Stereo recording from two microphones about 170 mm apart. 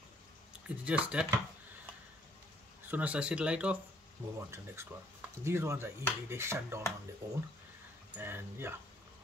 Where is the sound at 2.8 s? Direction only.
10° right (ahead or behind).